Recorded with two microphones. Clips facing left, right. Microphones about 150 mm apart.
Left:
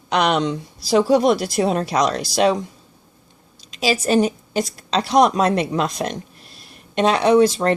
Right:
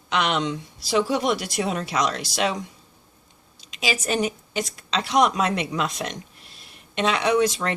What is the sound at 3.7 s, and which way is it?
Speech, 35° left (ahead or behind).